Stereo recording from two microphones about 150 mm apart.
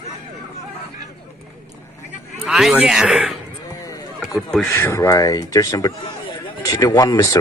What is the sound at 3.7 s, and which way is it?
Chop, 25° left (ahead or behind).